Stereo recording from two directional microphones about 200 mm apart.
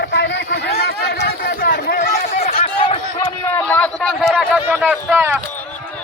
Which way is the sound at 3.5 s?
10° left (ahead or behind).